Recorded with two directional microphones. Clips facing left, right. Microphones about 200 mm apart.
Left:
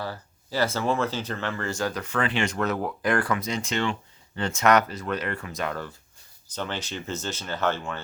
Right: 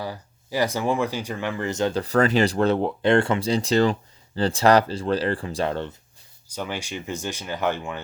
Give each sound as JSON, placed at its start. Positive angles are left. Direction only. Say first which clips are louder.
{"t": 0.0, "sound": "speech", "louder": "right 2 dB", "side_deg": -15}
{"t": 6.5, "sound": "speech", "louder": "right 2 dB", "side_deg": -10}